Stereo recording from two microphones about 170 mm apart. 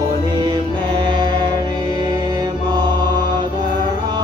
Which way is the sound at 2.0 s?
25° right (ahead or behind).